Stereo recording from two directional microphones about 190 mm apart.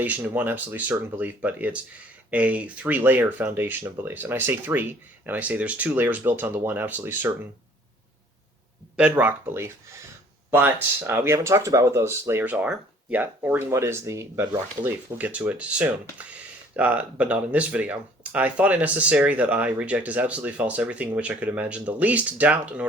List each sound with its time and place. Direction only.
0.0 s speech: 10° right (ahead or behind)
9.0 s speech: 5° right (ahead or behind)